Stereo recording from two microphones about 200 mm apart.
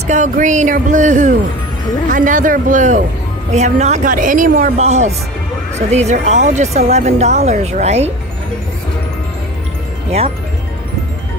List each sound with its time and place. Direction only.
0.0 s speech: 40° right (ahead or behind)